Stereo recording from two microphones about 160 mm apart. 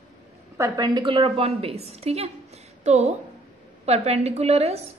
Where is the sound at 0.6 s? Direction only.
25° right (ahead or behind).